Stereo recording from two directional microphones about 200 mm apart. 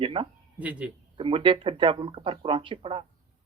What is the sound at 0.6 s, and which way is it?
Speech, 5° right (ahead or behind).